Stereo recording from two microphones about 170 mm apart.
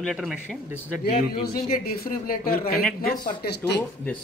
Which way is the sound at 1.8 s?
60° left (ahead or behind).